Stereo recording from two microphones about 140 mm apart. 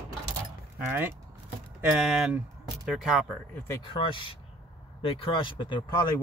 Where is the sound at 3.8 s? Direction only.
40° left (ahead or behind).